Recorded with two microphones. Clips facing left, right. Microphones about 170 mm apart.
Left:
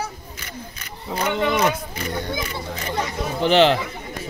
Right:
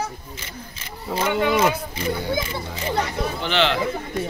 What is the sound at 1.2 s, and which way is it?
Speech, 5° right (ahead or behind).